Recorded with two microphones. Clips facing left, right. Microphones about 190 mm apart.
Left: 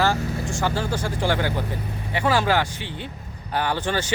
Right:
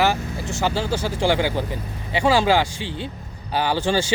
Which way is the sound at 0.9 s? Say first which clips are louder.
Right 2 dB; 5° right (ahead or behind).